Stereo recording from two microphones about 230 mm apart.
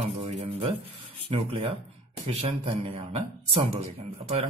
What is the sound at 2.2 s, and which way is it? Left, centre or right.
Speech, right.